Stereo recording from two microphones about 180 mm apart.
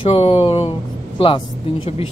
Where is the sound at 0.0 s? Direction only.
35° left (ahead or behind).